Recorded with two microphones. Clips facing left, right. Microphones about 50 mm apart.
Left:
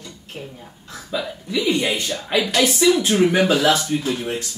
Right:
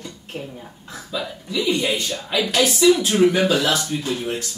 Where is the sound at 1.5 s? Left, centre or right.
Left.